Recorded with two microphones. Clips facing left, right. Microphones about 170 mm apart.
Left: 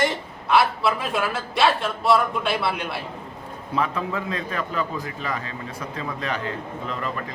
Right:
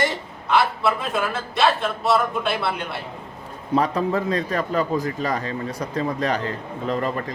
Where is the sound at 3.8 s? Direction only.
40° right (ahead or behind).